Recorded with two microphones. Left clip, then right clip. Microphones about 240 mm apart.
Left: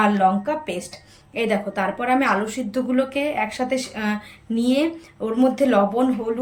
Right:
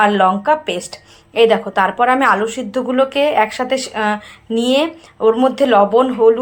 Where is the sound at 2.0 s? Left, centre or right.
Centre.